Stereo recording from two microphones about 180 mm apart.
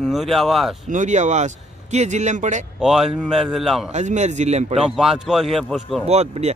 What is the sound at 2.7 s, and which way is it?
Speech, 5° right (ahead or behind).